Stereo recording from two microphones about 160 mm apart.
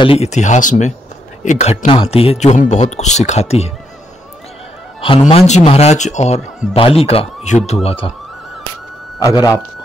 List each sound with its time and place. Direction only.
0.0 s a man's voice: 40° left (ahead or behind)
5.5 s speech: 40° left (ahead or behind)
9.2 s speech: 20° left (ahead or behind)